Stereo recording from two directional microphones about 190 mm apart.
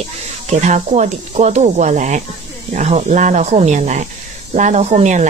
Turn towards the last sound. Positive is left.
turn(degrees=-40)  # may be behind; listen again after turning